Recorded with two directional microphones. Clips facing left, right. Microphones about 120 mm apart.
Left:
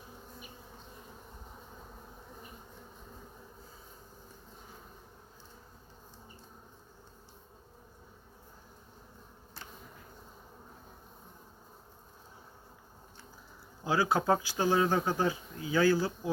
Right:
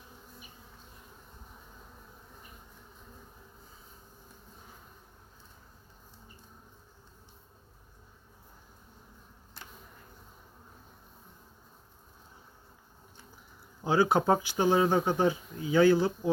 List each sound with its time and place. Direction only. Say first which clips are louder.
13.8 s speech: right 3 dB; 25° right (ahead or behind)